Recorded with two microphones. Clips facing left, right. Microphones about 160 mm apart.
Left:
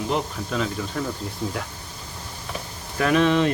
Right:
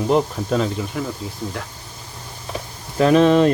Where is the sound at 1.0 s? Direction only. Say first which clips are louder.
Even; 5° right (ahead or behind).